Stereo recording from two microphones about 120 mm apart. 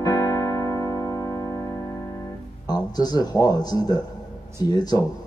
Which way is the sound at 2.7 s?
35° left (ahead or behind).